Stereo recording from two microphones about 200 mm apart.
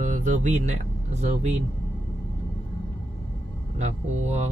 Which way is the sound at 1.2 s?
35° right (ahead or behind).